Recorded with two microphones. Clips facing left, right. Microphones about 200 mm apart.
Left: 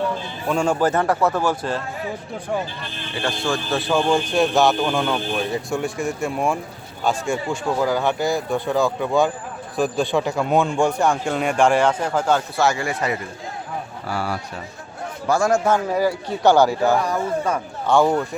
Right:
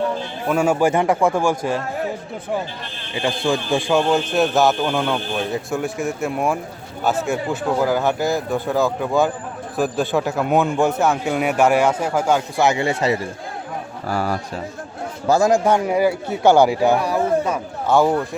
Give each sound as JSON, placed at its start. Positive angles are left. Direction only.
{"t": 0.4, "sound": "a man's voice", "side_deg": -5}
{"t": 3.2, "sound": "a man's voice", "side_deg": -15}
{"t": 14.1, "sound": "speech", "side_deg": -40}
{"t": 15.3, "sound": "a man's voice", "side_deg": -20}